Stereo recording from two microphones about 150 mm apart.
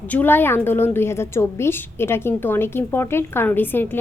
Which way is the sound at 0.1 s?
10° left (ahead or behind).